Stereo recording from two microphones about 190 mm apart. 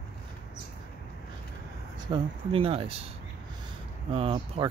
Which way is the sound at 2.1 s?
30° right (ahead or behind).